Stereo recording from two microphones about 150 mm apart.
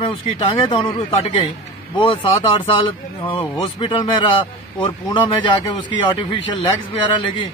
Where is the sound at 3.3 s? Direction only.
35° left (ahead or behind).